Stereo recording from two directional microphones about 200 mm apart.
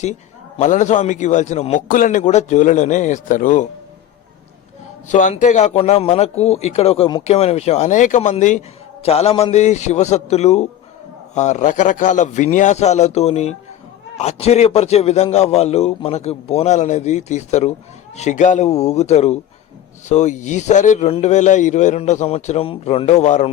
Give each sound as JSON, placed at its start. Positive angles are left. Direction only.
{"t": 0.0, "sound": "a man's voice", "side_deg": 35}
{"t": 5.0, "sound": "a man's voice", "side_deg": 40}